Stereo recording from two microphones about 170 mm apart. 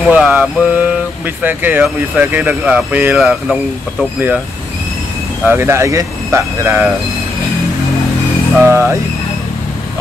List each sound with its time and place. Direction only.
0.0 s speech: 10° right (ahead or behind)
5.4 s speech: 15° right (ahead or behind)
8.5 s speech: 10° right (ahead or behind)